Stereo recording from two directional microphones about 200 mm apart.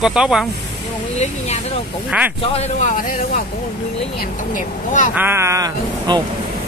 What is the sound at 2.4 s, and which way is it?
Speech, 30° left (ahead or behind).